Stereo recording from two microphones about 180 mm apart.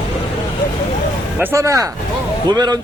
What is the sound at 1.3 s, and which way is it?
Speech, 15° right (ahead or behind).